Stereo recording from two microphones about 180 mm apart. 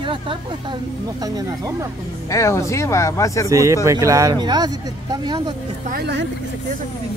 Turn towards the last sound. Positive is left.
turn(degrees=-65)  # may be behind; listen again after turning